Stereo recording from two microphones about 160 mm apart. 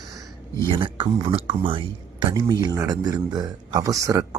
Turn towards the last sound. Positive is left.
turn(degrees=-20)  # may be behind; listen again after turning